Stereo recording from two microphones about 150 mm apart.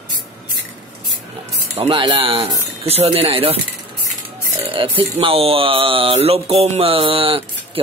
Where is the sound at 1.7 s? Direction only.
30° right (ahead or behind).